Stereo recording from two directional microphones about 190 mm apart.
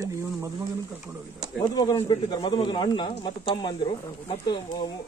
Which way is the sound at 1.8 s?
20° left (ahead or behind).